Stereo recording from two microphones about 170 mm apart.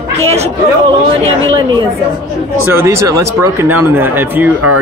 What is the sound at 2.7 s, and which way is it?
Speech, 15° right (ahead or behind).